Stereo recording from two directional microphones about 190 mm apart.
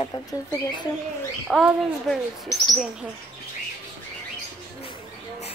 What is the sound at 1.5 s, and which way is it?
Speech, centre (ahead or behind).